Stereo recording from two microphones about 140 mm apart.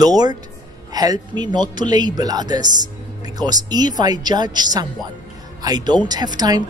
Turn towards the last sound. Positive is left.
turn(degrees=-30)  # may be behind; listen again after turning